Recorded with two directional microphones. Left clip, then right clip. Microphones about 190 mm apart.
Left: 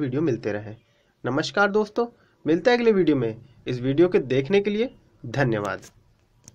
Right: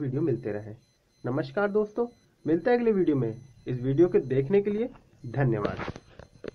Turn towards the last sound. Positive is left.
turn(degrees=25)  # may be behind; listen again after turning